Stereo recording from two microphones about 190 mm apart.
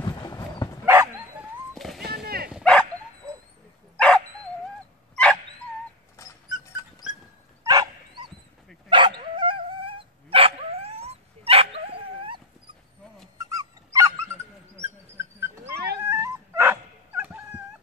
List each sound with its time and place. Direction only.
0.0 s dog: 20° left (ahead or behind)
0.8 s bow-wow: 15° right (ahead or behind)
1.8 s a sound: centre (ahead or behind)
2.2 s bow-wow: 55° right (ahead or behind)
2.5 s dog: 5° left (ahead or behind)
3.9 s dog: 5° left (ahead or behind)
6.2 s dog: 15° left (ahead or behind)
7.6 s dog: 20° right (ahead or behind)
13.4 s dog: 20° right (ahead or behind)
15.7 s dog: 55° right (ahead or behind)
16.0 s dog: 15° right (ahead or behind)